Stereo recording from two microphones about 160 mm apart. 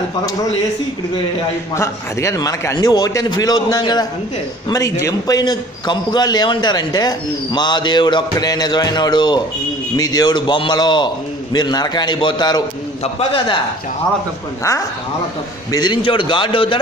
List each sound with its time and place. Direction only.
1.8 s a man's voice: 20° left (ahead or behind); by 13.6 s 35° left (ahead or behind)
15.7 s a man's voice: 25° left (ahead or behind)